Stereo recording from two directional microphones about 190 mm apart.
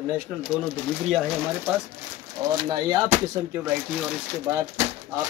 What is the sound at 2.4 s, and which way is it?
Speech, 15° right (ahead or behind).